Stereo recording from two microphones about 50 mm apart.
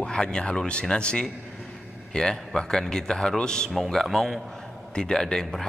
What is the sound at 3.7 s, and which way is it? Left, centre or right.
Speech, centre.